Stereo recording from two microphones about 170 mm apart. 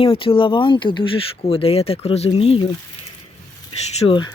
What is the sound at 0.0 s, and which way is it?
Speech, 30° left (ahead or behind).